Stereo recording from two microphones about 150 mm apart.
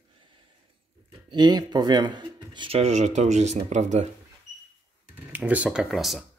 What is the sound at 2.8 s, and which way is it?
Speech, 50° right (ahead or behind).